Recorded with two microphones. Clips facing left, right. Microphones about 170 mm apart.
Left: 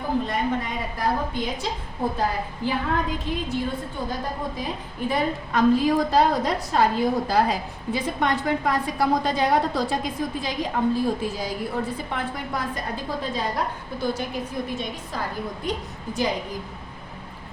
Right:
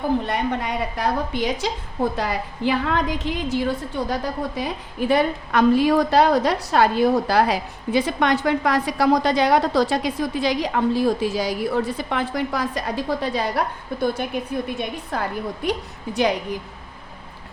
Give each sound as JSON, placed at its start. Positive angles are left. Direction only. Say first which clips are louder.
{"t": 0.3, "sound": "a woman's voice", "louder": "right 2 dB", "side_deg": -75}